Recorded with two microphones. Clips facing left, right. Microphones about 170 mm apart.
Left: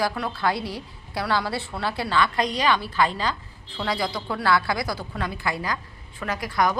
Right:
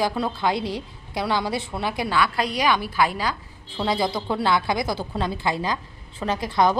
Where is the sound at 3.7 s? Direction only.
25° right (ahead or behind).